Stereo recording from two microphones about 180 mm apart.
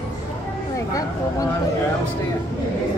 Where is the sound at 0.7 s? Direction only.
20° left (ahead or behind).